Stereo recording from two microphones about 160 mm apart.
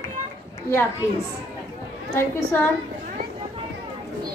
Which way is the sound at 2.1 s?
20° left (ahead or behind).